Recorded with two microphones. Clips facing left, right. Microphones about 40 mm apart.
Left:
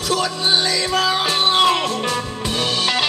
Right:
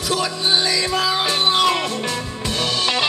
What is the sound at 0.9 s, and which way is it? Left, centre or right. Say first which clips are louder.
Music: left 4 dB; left.